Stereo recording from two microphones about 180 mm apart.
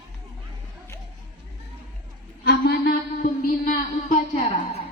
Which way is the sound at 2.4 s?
60° left (ahead or behind).